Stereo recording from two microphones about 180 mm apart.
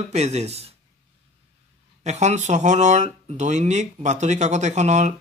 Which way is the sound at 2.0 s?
40° right (ahead or behind).